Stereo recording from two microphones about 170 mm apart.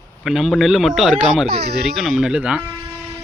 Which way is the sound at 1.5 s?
70° right (ahead or behind).